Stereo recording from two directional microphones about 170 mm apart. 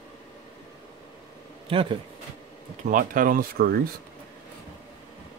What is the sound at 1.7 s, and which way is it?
Speech, 30° right (ahead or behind).